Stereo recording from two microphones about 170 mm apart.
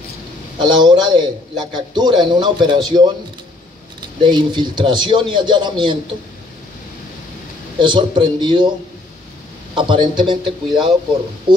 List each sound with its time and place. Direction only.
0.6 s a man's voice: 25° right (ahead or behind)
4.2 s a man's voice: 25° right (ahead or behind)
7.8 s a man's voice: 25° right (ahead or behind)
9.8 s a man's voice: 25° right (ahead or behind)